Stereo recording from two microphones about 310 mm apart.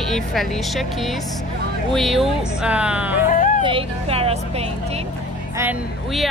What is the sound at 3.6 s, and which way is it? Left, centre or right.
Speech, centre.